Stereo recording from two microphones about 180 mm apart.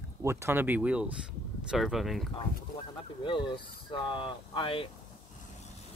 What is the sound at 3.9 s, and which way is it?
Speech, 25° left (ahead or behind).